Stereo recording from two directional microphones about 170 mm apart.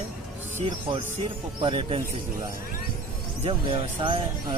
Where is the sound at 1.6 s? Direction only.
30° right (ahead or behind).